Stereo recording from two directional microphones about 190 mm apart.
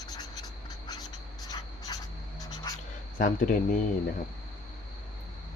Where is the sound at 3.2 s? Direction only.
45° left (ahead or behind).